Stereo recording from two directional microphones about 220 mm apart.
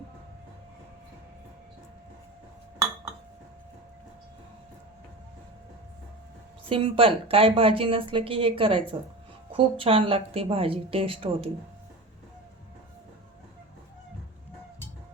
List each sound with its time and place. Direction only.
6.7 s a woman's voice: 25° right (ahead or behind)